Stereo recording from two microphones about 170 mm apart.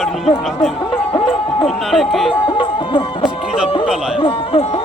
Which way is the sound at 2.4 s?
30° left (ahead or behind).